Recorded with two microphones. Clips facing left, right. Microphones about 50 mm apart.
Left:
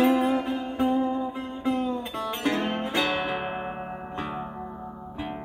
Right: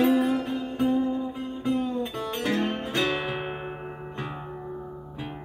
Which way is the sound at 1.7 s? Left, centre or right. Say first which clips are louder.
Even; left.